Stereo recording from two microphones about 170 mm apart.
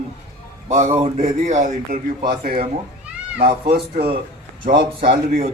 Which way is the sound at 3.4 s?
30° right (ahead or behind).